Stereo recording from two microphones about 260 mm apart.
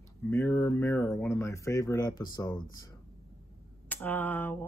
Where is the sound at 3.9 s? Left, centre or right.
Centre.